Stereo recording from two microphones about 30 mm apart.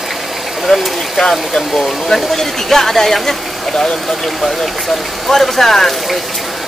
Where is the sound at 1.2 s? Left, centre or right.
Centre.